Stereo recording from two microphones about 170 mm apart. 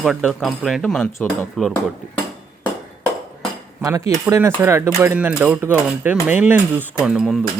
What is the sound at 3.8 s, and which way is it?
Speech, 20° right (ahead or behind).